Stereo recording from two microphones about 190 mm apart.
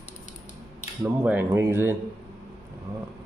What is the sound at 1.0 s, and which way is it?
Speech, 10° right (ahead or behind).